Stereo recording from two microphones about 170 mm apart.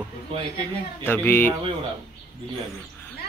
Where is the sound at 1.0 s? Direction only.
10° left (ahead or behind).